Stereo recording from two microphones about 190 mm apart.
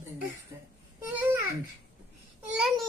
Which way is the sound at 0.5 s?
20° right (ahead or behind).